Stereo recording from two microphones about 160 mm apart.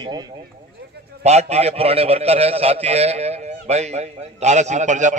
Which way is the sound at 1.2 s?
45° right (ahead or behind).